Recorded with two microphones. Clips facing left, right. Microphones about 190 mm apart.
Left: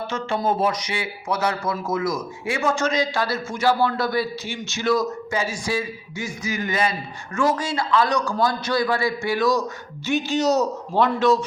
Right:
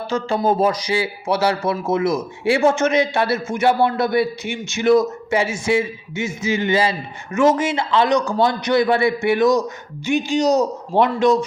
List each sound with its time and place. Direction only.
0.1 s a man's voice: 35° right (ahead or behind); by 11.3 s 15° right (ahead or behind)